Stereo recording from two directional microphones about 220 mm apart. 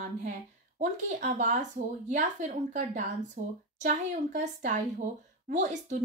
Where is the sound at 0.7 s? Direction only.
35° right (ahead or behind).